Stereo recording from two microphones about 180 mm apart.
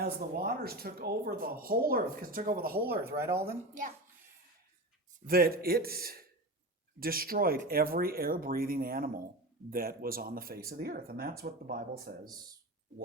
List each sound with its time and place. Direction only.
0.0 s speech: 55° right (ahead or behind)
3.2 s speech: 15° right (ahead or behind)
3.4 s speech: 50° right (ahead or behind)
5.2 s speech: 55° right (ahead or behind)